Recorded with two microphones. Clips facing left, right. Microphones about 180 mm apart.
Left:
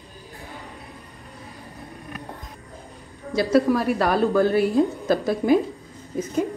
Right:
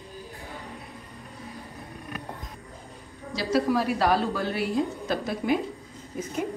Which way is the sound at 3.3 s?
55° left (ahead or behind).